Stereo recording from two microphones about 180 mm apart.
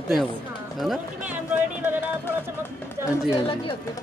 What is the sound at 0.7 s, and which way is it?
Run, 5° right (ahead or behind).